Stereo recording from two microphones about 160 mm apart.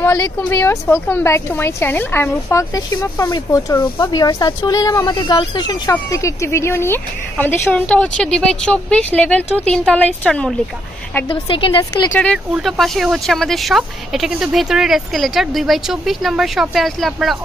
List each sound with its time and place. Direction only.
0.0 s a sound: 20° left (ahead or behind)
0.4 s a woman's voice: 15° left (ahead or behind)
11.2 s a woman's voice: 30° left (ahead or behind)
12.1 s a woman's voice: 5° left (ahead or behind)